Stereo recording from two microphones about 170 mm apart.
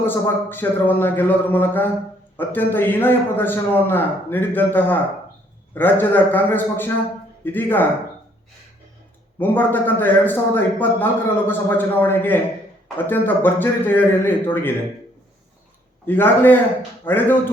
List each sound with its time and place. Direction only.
0.0 s a man's voice: 10° left (ahead or behind)
9.4 s a man's voice: 10° left (ahead or behind)
16.0 s a man's voice: 10° left (ahead or behind)